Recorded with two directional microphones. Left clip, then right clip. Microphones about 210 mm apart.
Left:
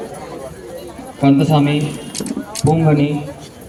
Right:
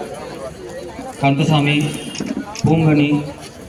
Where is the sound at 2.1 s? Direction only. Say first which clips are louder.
Even; 55° left (ahead or behind).